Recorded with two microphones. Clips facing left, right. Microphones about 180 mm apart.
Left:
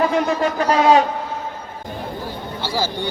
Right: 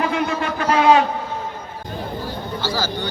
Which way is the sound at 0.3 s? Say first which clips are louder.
Left 3 dB; 40° left (ahead or behind).